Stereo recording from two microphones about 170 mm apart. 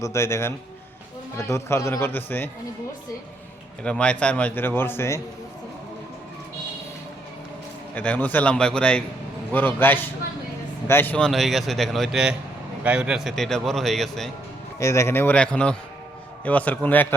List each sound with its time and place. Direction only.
0.0 s a man's voice: 15° left (ahead or behind)
3.8 s a man's voice: 5° left (ahead or behind)
7.9 s a man's voice: 10° left (ahead or behind)
14.8 s a man's voice: 15° left (ahead or behind)